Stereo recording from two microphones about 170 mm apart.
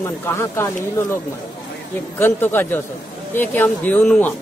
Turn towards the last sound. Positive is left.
turn(degrees=10)  # may be behind; listen again after turning